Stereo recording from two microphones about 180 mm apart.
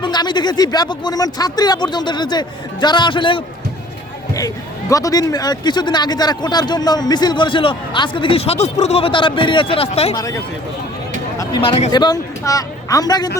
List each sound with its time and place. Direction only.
0.0 s speech: 25° left (ahead or behind)
10.2 s speech: 20° left (ahead or behind)